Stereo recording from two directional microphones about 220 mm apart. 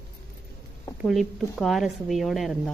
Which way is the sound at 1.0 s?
Centre (ahead or behind).